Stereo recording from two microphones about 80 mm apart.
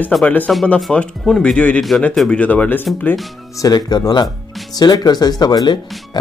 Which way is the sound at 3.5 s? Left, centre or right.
Left.